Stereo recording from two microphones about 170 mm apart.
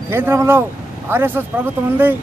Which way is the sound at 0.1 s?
15° right (ahead or behind).